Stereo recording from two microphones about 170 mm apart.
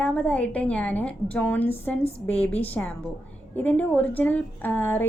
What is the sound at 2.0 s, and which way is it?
Speech, 35° left (ahead or behind).